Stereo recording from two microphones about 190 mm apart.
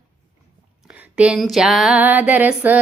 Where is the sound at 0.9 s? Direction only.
5° right (ahead or behind).